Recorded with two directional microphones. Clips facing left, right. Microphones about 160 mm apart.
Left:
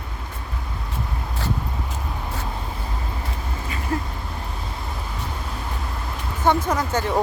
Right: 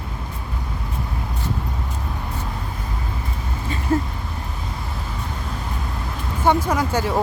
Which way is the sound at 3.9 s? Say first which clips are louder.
Right 6 dB; 25° right (ahead or behind).